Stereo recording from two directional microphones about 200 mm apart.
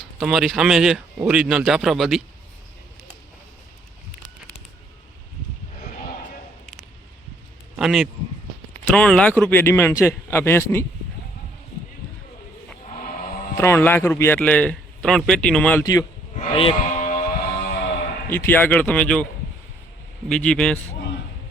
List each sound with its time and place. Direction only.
0.2 s speech: centre (ahead or behind)
7.8 s a man's voice: centre (ahead or behind)
13.6 s a man's voice: 10° left (ahead or behind)
16.3 s music: 30° left (ahead or behind)
18.3 s a man's voice: 10° left (ahead or behind)